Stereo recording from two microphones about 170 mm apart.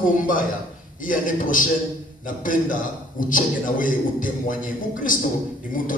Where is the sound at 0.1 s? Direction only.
50° left (ahead or behind).